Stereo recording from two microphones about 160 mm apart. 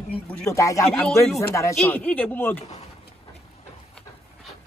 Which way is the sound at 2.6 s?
40° left (ahead or behind).